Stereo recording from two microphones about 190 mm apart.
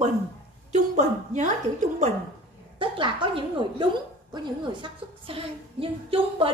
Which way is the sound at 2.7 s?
25° right (ahead or behind).